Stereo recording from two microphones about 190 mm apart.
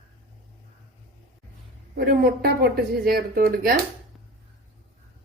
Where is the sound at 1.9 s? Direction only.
55° right (ahead or behind).